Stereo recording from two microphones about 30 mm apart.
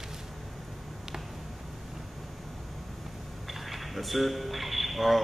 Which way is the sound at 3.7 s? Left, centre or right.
Centre.